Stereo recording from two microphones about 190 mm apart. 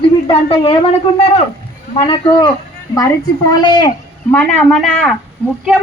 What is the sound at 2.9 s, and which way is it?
Speech, 20° left (ahead or behind).